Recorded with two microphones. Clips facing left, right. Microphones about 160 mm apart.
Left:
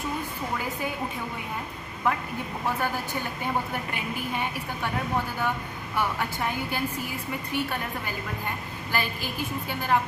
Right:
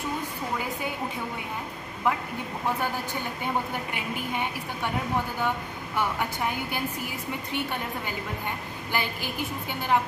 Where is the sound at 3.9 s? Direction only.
20° right (ahead or behind).